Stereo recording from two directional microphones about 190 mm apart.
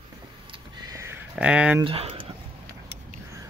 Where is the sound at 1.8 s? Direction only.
30° right (ahead or behind).